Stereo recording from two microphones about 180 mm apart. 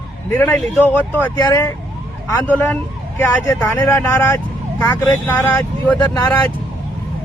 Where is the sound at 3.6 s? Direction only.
15° left (ahead or behind).